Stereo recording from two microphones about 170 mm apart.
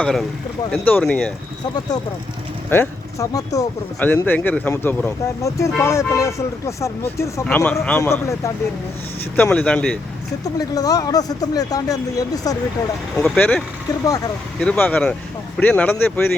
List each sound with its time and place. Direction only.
0.0 s speech: centre (ahead or behind)
2.6 s speech: 15° left (ahead or behind)
4.0 s speech: 10° left (ahead or behind)
10.6 s speech: 20° left (ahead or behind)
13.1 s speech: 5° left (ahead or behind)